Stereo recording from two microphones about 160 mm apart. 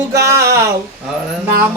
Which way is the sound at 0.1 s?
20° right (ahead or behind).